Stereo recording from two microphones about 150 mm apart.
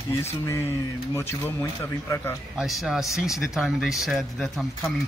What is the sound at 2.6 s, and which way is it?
Speech, centre (ahead or behind).